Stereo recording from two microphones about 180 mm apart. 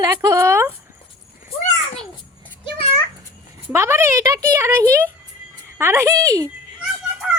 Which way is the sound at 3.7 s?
15° right (ahead or behind).